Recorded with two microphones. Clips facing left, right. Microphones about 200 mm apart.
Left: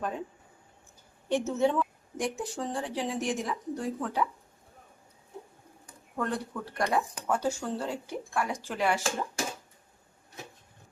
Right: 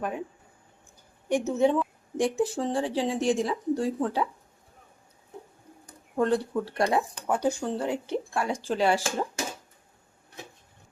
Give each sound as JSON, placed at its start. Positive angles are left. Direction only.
{"t": 0.0, "sound": "a woman's voice", "side_deg": -10}
{"t": 1.3, "sound": "a woman's voice", "side_deg": -15}
{"t": 2.1, "sound": "speech", "side_deg": -30}
{"t": 6.1, "sound": "speech", "side_deg": -25}
{"t": 7.3, "sound": "speech", "side_deg": -15}